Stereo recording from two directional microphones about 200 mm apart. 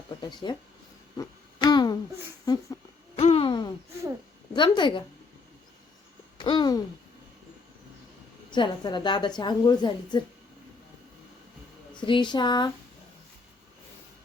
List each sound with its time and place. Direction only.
0.2 s speech: 20° left (ahead or behind)
1.1 s a sound: 20° left (ahead or behind)
3.2 s a sound: 30° left (ahead or behind)
4.5 s a woman's voice: 25° left (ahead or behind)
6.3 s speech: 25° left (ahead or behind)
8.4 s a woman's voice: 20° left (ahead or behind)
11.9 s a woman's voice: 25° left (ahead or behind)